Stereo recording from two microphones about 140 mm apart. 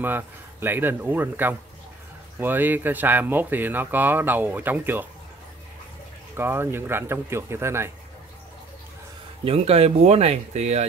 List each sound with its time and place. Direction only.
0.0 s speech: 15° right (ahead or behind)
6.3 s speech: 15° right (ahead or behind)
9.4 s speech: 45° right (ahead or behind)